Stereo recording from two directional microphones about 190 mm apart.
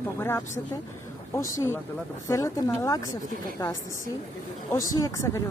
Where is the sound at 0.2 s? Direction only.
15° left (ahead or behind).